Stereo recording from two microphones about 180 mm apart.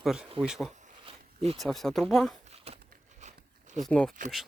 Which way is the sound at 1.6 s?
Centre (ahead or behind).